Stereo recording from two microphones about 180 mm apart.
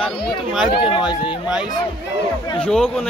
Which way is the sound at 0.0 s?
Centre (ahead or behind).